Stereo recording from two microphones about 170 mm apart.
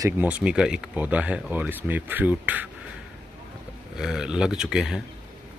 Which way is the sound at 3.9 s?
5° right (ahead or behind).